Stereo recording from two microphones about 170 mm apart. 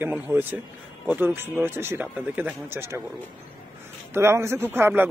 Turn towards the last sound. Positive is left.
turn(degrees=-10)  # may be behind; listen again after turning